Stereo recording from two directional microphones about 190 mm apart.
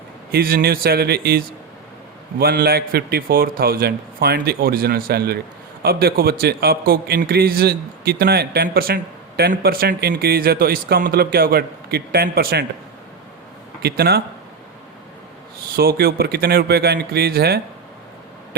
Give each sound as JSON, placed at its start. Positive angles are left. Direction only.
{"t": 0.3, "sound": "a man's voice", "side_deg": -50}
{"t": 13.8, "sound": "a man's voice", "side_deg": -55}
{"t": 15.7, "sound": "a man's voice", "side_deg": -50}